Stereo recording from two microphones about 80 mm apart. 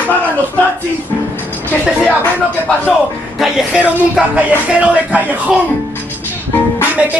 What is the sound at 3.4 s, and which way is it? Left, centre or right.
Speech, centre.